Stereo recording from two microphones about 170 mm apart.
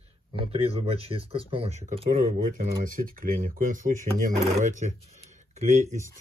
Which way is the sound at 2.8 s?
55° right (ahead or behind).